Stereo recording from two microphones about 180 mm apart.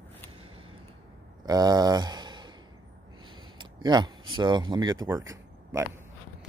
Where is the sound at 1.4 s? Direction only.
20° right (ahead or behind).